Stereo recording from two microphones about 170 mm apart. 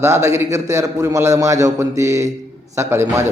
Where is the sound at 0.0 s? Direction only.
15° right (ahead or behind).